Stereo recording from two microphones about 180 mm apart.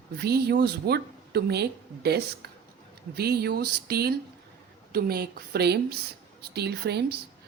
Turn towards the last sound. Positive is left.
turn(degrees=-65)  # may be behind; listen again after turning